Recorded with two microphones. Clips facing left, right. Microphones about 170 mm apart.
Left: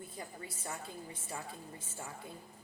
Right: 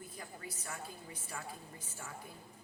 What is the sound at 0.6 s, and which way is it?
Speech, 25° left (ahead or behind).